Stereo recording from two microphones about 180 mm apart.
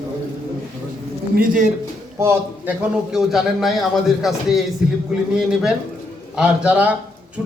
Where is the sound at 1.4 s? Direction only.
45° right (ahead or behind).